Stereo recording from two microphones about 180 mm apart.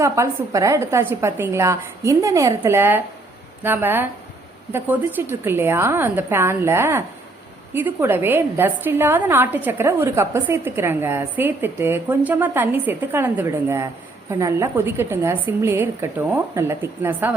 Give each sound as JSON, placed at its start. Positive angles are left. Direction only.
{"t": 0.0, "sound": "a woman's voice", "side_deg": -15}